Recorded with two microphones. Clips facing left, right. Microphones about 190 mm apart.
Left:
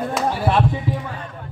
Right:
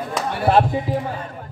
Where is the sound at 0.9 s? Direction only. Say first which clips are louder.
Right 2 dB; 40° right (ahead or behind).